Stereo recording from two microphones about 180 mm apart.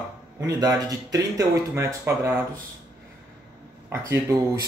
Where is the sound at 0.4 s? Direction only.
20° right (ahead or behind).